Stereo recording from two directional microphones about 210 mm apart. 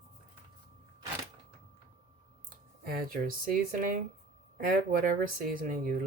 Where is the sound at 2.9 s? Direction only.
40° right (ahead or behind).